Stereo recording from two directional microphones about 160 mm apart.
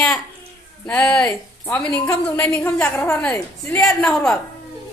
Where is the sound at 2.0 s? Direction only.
20° left (ahead or behind).